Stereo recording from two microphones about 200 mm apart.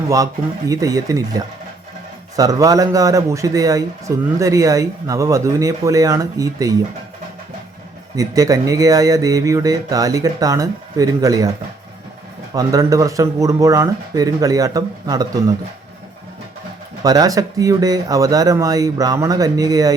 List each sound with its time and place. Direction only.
0.7 s a man's voice: 15° right (ahead or behind)
8.1 s a man's voice: 15° right (ahead or behind)
12.5 s a man's voice: 15° right (ahead or behind)
17.0 s a man's voice: 20° right (ahead or behind)